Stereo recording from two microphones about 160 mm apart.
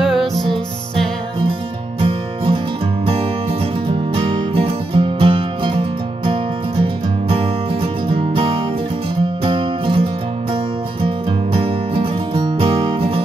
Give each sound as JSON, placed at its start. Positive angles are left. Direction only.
{"t": 0.1, "sound": "music", "side_deg": 0}
{"t": 2.0, "sound": "music", "side_deg": -35}
{"t": 3.9, "sound": "music", "side_deg": -35}